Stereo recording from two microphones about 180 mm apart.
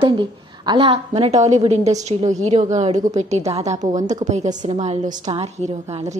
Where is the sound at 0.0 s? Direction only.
25° right (ahead or behind).